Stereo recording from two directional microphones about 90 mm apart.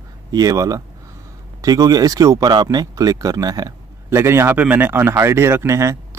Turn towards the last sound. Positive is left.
turn(degrees=-30)  # may be behind; listen again after turning